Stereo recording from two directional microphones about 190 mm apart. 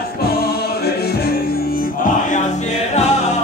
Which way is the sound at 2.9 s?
35° left (ahead or behind).